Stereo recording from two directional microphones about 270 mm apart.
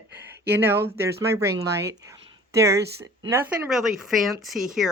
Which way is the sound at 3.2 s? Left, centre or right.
Centre.